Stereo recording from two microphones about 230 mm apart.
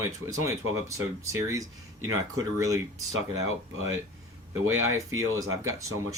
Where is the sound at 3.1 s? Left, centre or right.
Left.